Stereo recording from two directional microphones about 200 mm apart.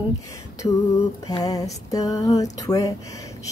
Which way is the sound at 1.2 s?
20° left (ahead or behind).